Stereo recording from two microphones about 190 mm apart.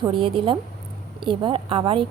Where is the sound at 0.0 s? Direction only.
25° right (ahead or behind).